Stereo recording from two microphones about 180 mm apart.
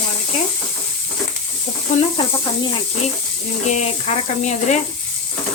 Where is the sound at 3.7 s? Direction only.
40° left (ahead or behind).